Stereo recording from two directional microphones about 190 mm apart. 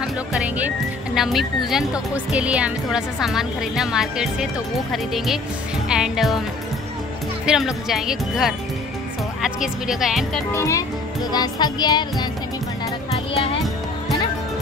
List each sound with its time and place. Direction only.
0.3 s a woman's voice: 5° right (ahead or behind)
7.4 s a woman's voice: centre (ahead or behind)
10.5 s a child's voice: 15° left (ahead or behind)
11.3 s music: 20° left (ahead or behind)